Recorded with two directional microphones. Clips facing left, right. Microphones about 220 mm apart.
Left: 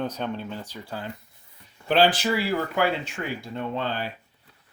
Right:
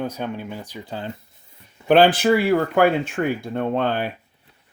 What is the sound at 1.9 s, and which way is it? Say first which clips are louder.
Speech: right 6 dB; 55° right (ahead or behind).